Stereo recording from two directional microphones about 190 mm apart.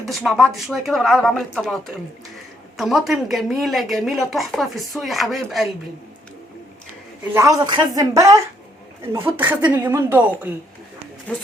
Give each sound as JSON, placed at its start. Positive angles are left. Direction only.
{"t": 0.0, "sound": "speech", "side_deg": 0}
{"t": 7.3, "sound": "a man's voice", "side_deg": -20}
{"t": 11.3, "sound": "speech", "side_deg": 5}